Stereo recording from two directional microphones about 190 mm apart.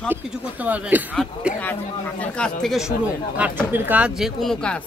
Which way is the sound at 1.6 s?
10° left (ahead or behind).